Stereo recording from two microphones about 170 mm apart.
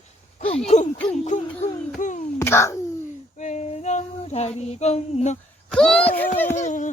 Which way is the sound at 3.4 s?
45° left (ahead or behind).